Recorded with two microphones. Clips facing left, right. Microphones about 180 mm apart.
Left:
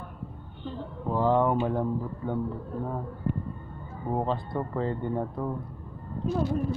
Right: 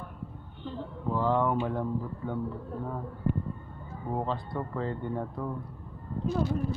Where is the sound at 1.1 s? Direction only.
25° left (ahead or behind).